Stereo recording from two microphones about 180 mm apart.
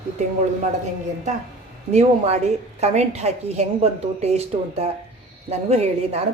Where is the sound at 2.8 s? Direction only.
35° right (ahead or behind).